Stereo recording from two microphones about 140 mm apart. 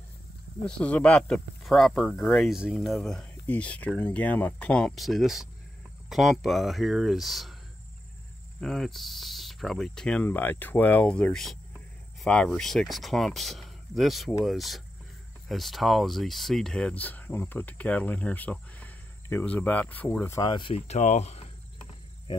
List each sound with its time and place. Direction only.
0.7 s speech: 10° left (ahead or behind)
8.5 s speech: 5° left (ahead or behind)
20.4 s speech: 35° left (ahead or behind)